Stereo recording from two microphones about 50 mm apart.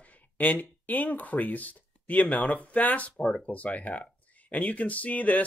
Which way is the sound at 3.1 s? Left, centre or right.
Centre.